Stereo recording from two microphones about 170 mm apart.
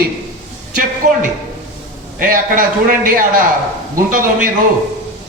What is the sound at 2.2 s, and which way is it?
A woman's voice, 55° right (ahead or behind).